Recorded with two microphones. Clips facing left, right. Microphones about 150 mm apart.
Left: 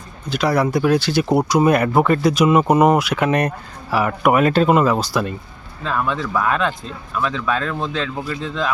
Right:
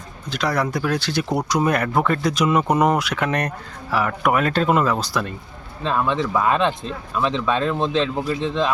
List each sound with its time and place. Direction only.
0.3 s speech: 5° left (ahead or behind)
5.8 s speech: 20° right (ahead or behind)